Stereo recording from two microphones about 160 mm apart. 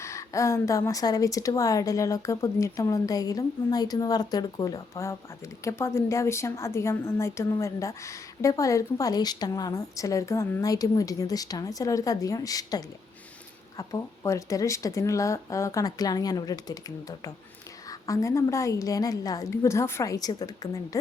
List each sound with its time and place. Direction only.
0.0 s a woman's voice: 20° left (ahead or behind)